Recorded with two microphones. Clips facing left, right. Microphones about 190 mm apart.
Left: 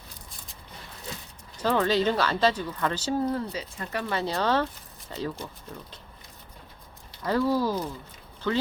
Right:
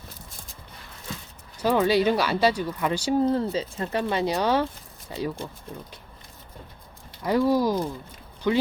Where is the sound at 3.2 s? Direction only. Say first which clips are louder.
Right 5 dB; 30° right (ahead or behind); by 5.2 s 10° right (ahead or behind).